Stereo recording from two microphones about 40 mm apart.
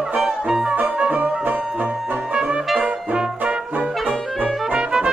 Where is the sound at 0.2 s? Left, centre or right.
Centre.